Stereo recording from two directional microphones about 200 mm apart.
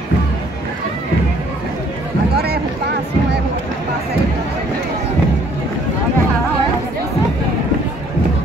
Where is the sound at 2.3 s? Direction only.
50° right (ahead or behind).